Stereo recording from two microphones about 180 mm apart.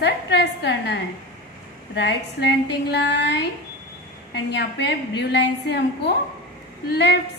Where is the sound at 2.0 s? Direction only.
70° left (ahead or behind).